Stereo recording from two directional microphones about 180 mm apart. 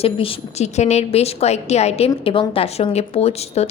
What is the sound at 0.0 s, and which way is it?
A woman's voice, 30° left (ahead or behind).